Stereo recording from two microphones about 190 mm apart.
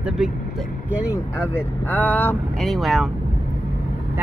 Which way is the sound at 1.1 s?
10° left (ahead or behind).